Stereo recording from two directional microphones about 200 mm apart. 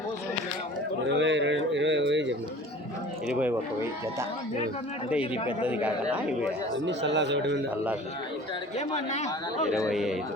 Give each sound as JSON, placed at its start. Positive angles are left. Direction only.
{"t": 1.1, "sound": "a sound", "side_deg": -65}
{"t": 3.2, "sound": "speech", "side_deg": -5}
{"t": 5.8, "sound": "speech", "side_deg": -5}
{"t": 6.8, "sound": "a man's voice", "side_deg": -60}
{"t": 8.9, "sound": "speech", "side_deg": 35}
{"t": 9.9, "sound": "a man's voice", "side_deg": 0}